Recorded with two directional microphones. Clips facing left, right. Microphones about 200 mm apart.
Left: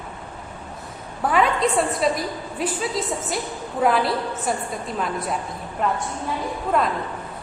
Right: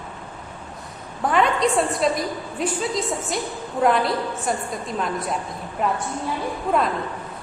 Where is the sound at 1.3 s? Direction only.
5° left (ahead or behind).